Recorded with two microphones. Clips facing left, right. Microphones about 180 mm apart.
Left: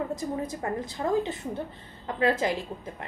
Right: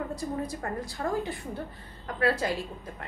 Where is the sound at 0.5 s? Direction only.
20° left (ahead or behind).